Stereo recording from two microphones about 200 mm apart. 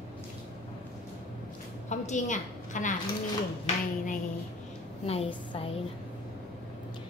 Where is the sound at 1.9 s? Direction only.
35° left (ahead or behind).